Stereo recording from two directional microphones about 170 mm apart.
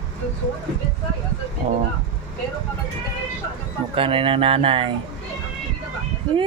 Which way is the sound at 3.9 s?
30° right (ahead or behind).